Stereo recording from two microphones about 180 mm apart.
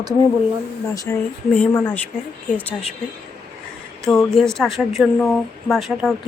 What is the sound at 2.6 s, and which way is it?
Speech, 10° left (ahead or behind).